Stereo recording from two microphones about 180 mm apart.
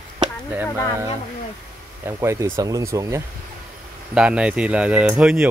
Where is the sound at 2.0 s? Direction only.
15° right (ahead or behind).